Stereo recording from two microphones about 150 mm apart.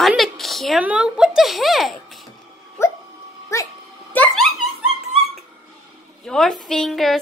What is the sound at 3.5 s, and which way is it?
Speech, 20° left (ahead or behind).